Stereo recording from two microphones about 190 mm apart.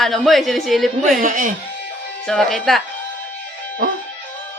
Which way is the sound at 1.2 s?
45° right (ahead or behind).